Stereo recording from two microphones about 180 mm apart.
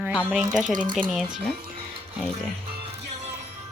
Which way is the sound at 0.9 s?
25° right (ahead or behind).